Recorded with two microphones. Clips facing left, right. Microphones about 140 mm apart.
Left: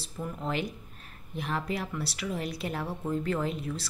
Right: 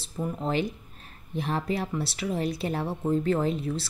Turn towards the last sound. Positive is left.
turn(degrees=-30)  # may be behind; listen again after turning